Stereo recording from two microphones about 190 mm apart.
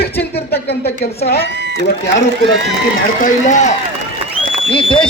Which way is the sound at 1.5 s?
60° right (ahead or behind).